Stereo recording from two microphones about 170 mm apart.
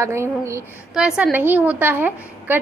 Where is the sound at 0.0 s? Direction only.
15° right (ahead or behind).